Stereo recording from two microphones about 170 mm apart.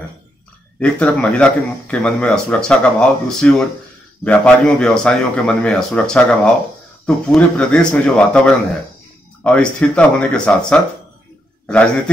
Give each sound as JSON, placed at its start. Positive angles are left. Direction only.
{"t": 0.7, "sound": "a man's voice", "side_deg": 5}